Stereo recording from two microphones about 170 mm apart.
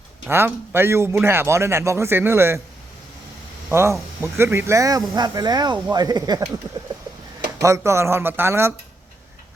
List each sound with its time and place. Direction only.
0.3 s a man's voice: 15° right (ahead or behind)
3.7 s speech: 15° right (ahead or behind)
7.6 s a man's voice: 15° right (ahead or behind)